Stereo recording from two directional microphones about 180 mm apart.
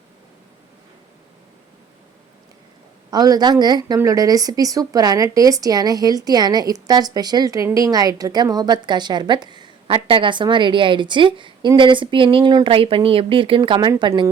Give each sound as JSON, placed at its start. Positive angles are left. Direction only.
{"t": 3.1, "sound": "a woman's voice", "side_deg": -20}